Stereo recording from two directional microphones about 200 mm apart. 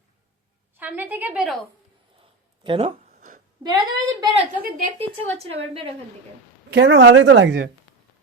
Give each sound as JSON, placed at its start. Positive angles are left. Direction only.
{"t": 0.8, "sound": "a woman's voice", "side_deg": -10}
{"t": 2.6, "sound": "a sound", "side_deg": -30}
{"t": 3.6, "sound": "a woman's voice", "side_deg": -20}
{"t": 6.7, "sound": "a woman's voice", "side_deg": -60}